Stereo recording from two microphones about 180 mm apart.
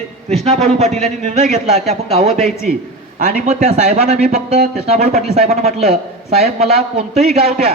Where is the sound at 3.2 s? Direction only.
35° right (ahead or behind).